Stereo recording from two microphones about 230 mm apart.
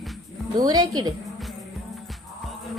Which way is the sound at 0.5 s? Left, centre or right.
Centre.